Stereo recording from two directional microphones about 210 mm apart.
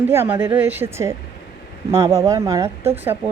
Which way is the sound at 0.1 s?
10° right (ahead or behind).